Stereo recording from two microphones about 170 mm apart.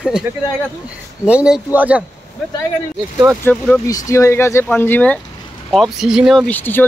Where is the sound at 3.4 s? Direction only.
15° left (ahead or behind).